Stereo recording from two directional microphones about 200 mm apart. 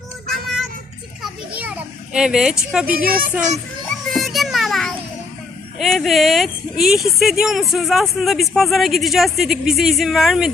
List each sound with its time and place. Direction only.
0.4 s child singing: centre (ahead or behind)
1.5 s children playing: 5° right (ahead or behind)
2.8 s speech: 45° right (ahead or behind)
4.1 s children playing: centre (ahead or behind)
5.8 s speech: centre (ahead or behind)